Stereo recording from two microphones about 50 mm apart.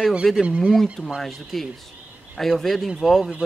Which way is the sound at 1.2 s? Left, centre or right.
Centre.